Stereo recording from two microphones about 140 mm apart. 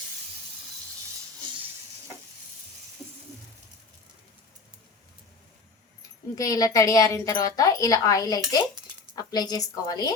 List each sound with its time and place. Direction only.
6.0 s a woman's voice: 25° left (ahead or behind)